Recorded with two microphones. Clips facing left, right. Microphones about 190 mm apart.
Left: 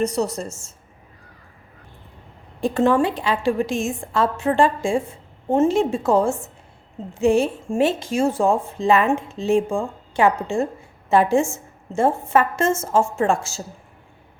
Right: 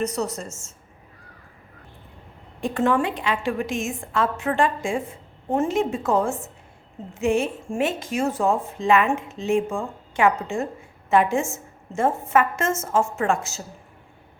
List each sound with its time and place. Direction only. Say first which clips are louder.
0.0 s a woman's voice: left 4 dB; 30° left (ahead or behind)
2.6 s a woman's voice: left 4 dB; 30° left (ahead or behind)